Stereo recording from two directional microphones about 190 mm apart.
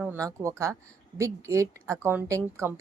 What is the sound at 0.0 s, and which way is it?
Speech, 15° right (ahead or behind).